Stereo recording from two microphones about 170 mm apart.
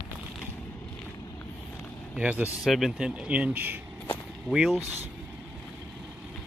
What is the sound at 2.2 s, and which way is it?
Speech, 5° right (ahead or behind).